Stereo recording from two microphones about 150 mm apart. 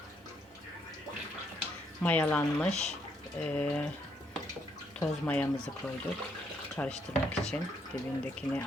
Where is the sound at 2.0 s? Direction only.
10° left (ahead or behind).